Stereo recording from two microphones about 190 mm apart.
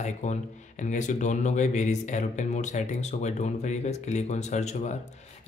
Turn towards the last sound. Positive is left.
turn(degrees=35)  # may be behind; listen again after turning